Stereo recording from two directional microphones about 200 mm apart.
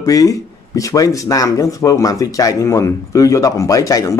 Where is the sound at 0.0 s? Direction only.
15° left (ahead or behind).